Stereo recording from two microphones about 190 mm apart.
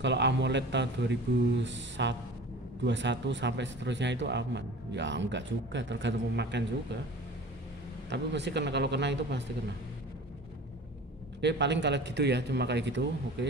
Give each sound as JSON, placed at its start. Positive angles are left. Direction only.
{"t": 0.0, "sound": "a man's voice", "side_deg": -65}
{"t": 8.1, "sound": "a man's voice", "side_deg": -65}
{"t": 11.4, "sound": "a man's voice", "side_deg": -65}